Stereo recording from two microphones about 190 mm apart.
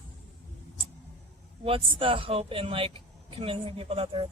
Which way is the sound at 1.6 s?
30° right (ahead or behind).